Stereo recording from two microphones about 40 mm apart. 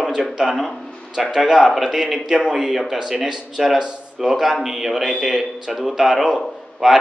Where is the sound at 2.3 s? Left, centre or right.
Right.